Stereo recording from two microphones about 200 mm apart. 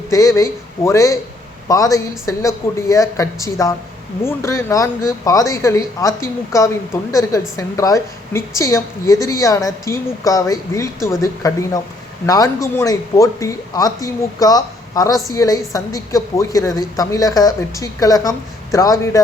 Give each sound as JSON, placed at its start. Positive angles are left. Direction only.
{"t": 0.1, "sound": "a woman's voice", "side_deg": 15}